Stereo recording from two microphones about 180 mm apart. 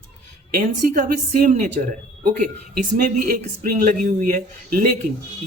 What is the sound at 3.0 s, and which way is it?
A man's voice, 50° right (ahead or behind).